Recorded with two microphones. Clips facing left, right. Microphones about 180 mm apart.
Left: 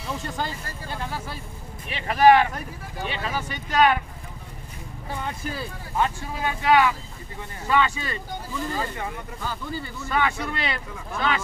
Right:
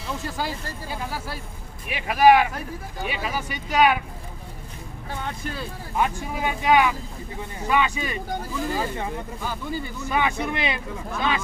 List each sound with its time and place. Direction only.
0.0 s speech: centre (ahead or behind)
5.1 s speech: 5° left (ahead or behind)
5.9 s speech: 15° right (ahead or behind)
9.4 s speech: 15° right (ahead or behind)